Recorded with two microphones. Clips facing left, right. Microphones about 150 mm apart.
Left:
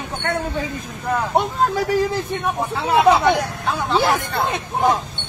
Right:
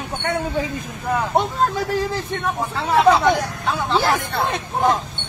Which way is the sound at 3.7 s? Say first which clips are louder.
Left 1 dB; centre (ahead or behind).